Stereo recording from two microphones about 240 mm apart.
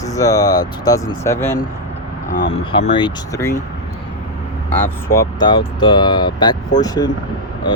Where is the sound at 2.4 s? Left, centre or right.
Left.